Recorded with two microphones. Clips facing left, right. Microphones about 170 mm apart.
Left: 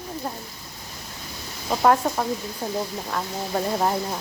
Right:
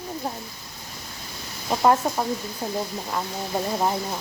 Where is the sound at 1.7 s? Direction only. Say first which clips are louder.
Left 1 dB; 10° right (ahead or behind).